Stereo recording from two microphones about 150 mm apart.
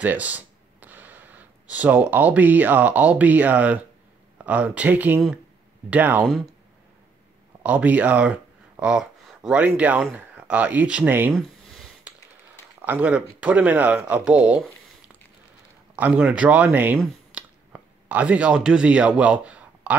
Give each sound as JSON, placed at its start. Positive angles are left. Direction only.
{"t": 0.0, "sound": "speech", "side_deg": -10}
{"t": 7.6, "sound": "speech", "side_deg": -10}
{"t": 12.1, "sound": "tap", "side_deg": -10}
{"t": 12.8, "sound": "speech", "side_deg": -10}
{"t": 16.0, "sound": "speech", "side_deg": -10}
{"t": 17.3, "sound": "a sound", "side_deg": -10}